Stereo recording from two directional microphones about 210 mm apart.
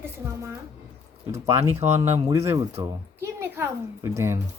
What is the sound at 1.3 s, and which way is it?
A woman's voice, 15° right (ahead or behind).